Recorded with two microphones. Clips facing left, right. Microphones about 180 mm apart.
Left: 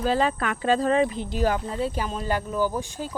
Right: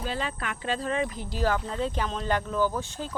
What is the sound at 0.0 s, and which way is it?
Speech, 40° left (ahead or behind).